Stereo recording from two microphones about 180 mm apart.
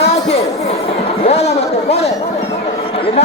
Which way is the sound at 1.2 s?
35° left (ahead or behind).